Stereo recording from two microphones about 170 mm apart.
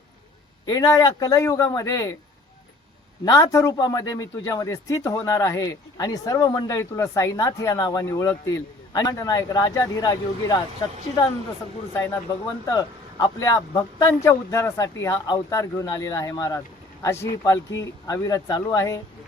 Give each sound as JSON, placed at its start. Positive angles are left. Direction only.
{"t": 0.6, "sound": "a man's voice", "side_deg": 20}
{"t": 3.2, "sound": "a man's voice", "side_deg": 20}
{"t": 12.6, "sound": "a man's voice", "side_deg": 20}